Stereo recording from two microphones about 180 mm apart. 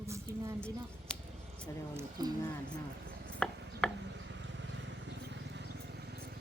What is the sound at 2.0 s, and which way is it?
Speech, 20° right (ahead or behind).